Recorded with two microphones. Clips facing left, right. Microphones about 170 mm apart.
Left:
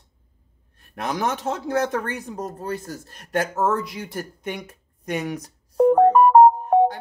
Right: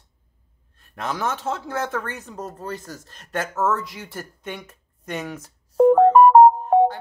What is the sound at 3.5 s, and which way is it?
Speech, 35° left (ahead or behind).